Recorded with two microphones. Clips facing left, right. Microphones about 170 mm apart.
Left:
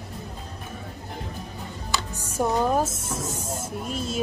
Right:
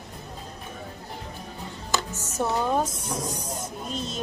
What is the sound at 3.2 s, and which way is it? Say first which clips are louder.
Snake: even; 25° left (ahead or behind).